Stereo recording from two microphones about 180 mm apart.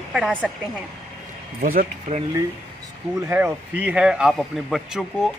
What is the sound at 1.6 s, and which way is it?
Speech, 50° right (ahead or behind).